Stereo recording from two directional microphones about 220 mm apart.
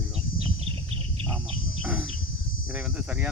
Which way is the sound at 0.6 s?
25° right (ahead or behind).